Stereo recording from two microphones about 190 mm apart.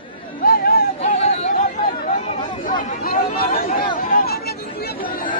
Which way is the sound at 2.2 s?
25° left (ahead or behind).